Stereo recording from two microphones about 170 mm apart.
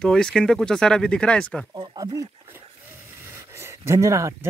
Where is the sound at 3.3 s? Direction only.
15° right (ahead or behind).